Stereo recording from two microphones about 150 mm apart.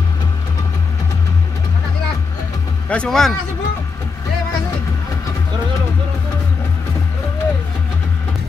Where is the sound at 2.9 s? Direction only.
5° left (ahead or behind).